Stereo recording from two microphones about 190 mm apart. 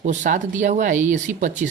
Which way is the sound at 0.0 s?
40° right (ahead or behind).